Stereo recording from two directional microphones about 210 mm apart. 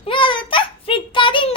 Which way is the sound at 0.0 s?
25° left (ahead or behind).